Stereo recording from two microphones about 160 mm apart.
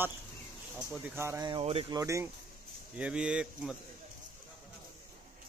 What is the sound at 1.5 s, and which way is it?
Speech, 35° right (ahead or behind).